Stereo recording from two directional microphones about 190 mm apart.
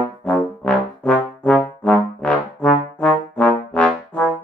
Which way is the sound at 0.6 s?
5° left (ahead or behind).